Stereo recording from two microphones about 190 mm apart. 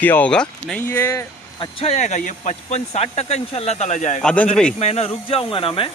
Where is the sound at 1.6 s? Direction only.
30° left (ahead or behind).